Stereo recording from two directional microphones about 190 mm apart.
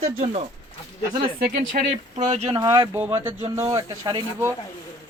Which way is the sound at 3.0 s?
10° right (ahead or behind).